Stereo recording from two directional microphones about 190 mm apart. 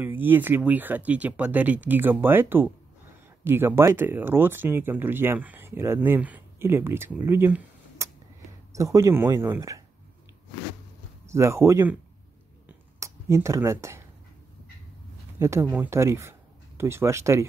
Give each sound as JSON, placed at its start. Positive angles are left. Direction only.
{"t": 0.0, "sound": "speech", "side_deg": -10}
{"t": 11.2, "sound": "speech", "side_deg": -15}
{"t": 12.6, "sound": "a sound", "side_deg": -15}
{"t": 15.3, "sound": "speech", "side_deg": -15}